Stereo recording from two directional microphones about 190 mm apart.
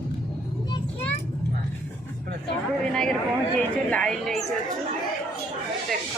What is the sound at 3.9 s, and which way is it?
Speech, 5° left (ahead or behind).